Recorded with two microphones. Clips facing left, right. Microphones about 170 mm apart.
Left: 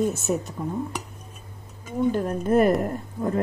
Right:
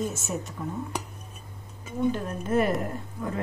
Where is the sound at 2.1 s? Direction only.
40° left (ahead or behind).